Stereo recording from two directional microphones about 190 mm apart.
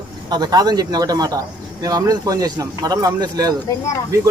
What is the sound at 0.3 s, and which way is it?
Speech, 20° right (ahead or behind).